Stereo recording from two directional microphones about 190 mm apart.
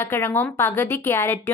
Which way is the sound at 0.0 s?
10° left (ahead or behind).